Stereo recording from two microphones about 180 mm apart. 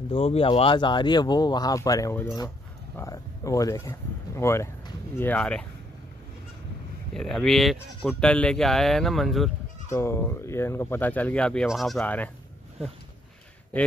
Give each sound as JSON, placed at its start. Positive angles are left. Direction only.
{"t": 0.1, "sound": "speech", "side_deg": 30}
{"t": 3.0, "sound": "a sound", "side_deg": 15}
{"t": 4.4, "sound": "speech", "side_deg": 15}
{"t": 7.2, "sound": "speech", "side_deg": 0}
{"t": 9.8, "sound": "speech", "side_deg": 15}